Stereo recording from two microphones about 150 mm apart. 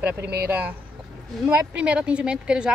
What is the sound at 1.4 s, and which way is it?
Speech, 10° right (ahead or behind).